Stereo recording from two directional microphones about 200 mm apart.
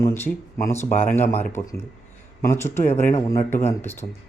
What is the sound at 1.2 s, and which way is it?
Speech, 10° left (ahead or behind).